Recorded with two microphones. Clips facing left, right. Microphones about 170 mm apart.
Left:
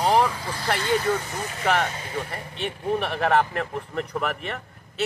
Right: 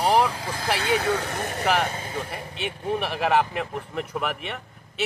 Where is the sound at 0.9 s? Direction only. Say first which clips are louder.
Left 1 dB; 70° right (ahead or behind).